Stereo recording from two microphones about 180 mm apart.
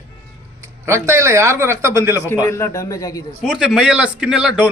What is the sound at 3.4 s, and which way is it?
A man's voice, 5° right (ahead or behind).